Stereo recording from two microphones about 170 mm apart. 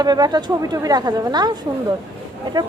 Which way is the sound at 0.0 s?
25° right (ahead or behind).